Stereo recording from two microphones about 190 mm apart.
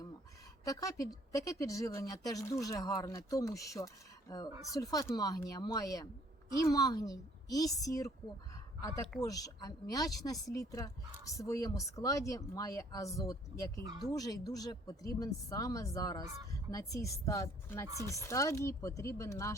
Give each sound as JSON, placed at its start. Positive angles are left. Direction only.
{"t": 0.6, "sound": "speech", "side_deg": 15}
{"t": 9.2, "sound": "speech", "side_deg": 20}